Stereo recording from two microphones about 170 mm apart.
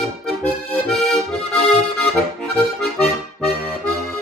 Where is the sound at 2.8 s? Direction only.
Centre (ahead or behind).